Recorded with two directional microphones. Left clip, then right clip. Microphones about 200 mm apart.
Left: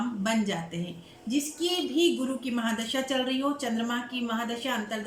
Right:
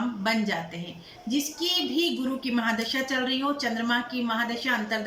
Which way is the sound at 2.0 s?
15° left (ahead or behind).